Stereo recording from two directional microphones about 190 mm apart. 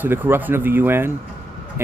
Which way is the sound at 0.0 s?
10° right (ahead or behind).